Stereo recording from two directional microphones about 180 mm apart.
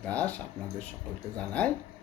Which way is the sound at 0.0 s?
10° left (ahead or behind).